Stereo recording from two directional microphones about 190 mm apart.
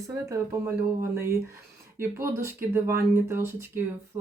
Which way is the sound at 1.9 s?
15° right (ahead or behind).